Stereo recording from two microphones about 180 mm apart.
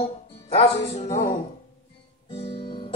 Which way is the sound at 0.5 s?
35° left (ahead or behind).